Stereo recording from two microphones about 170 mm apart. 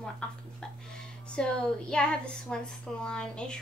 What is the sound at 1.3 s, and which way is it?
A woman's voice, 5° left (ahead or behind).